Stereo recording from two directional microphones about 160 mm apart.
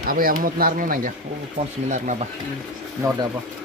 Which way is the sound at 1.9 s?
50° right (ahead or behind).